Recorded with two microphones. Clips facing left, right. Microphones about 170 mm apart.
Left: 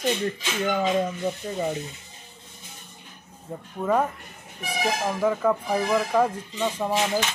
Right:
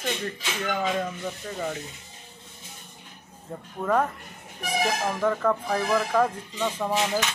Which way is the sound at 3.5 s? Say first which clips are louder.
Left 1 dB; 10° left (ahead or behind).